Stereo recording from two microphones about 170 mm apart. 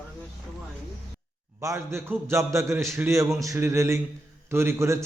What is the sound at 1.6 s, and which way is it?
Speech, 15° right (ahead or behind).